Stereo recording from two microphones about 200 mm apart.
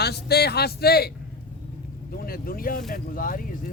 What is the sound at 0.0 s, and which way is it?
A man's voice, 55° left (ahead or behind).